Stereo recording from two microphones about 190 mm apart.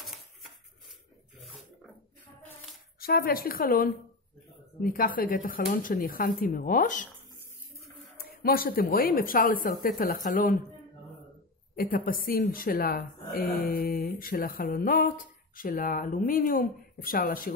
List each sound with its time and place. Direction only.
0.0 s dishes: centre (ahead or behind)
3.0 s a woman's voice: 50° left (ahead or behind)
8.2 s a woman's voice: 50° left (ahead or behind)
11.7 s a woman's voice: 50° left (ahead or behind)